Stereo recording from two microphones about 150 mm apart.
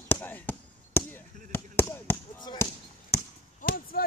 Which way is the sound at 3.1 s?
75° left (ahead or behind).